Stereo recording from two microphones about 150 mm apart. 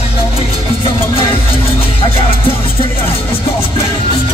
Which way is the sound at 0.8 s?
40° left (ahead or behind).